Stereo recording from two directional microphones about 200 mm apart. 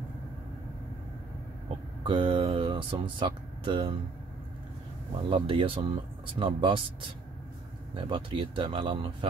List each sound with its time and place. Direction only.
2.0 s speech: 25° right (ahead or behind)
5.3 s speech: 25° right (ahead or behind)
7.9 s speech: 25° right (ahead or behind)